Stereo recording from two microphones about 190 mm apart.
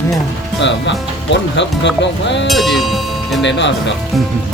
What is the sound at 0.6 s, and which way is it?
Speech, 70° left (ahead or behind).